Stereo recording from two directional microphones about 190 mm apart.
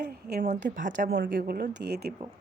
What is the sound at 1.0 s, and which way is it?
Speech, 50° right (ahead or behind).